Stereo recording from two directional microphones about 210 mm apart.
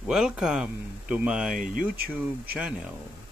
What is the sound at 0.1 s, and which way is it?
Speech, 5° right (ahead or behind).